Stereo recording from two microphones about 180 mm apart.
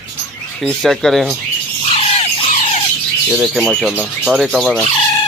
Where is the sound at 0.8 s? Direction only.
Centre (ahead or behind).